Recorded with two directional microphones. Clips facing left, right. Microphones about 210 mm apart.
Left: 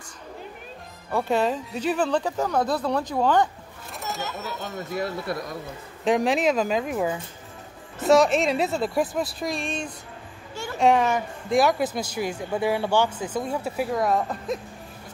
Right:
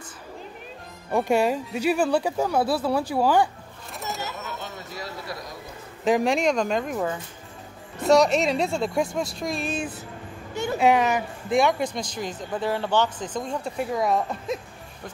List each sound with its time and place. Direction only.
1.1 s speech: 15° right (ahead or behind)
5.3 s speech: 55° left (ahead or behind)
6.0 s speech: centre (ahead or behind)